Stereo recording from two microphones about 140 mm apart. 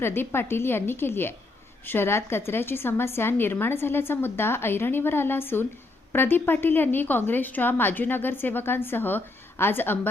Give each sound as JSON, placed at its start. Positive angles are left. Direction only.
{"t": 0.0, "sound": "a woman's voice", "side_deg": 15}